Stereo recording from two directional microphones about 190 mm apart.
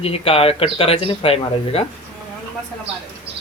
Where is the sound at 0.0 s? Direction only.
30° left (ahead or behind).